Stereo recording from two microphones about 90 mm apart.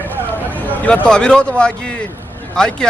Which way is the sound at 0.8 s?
10° left (ahead or behind).